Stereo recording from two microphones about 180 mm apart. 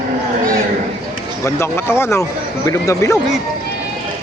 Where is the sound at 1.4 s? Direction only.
15° left (ahead or behind).